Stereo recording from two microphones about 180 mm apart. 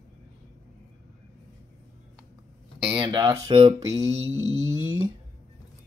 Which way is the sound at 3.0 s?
20° right (ahead or behind).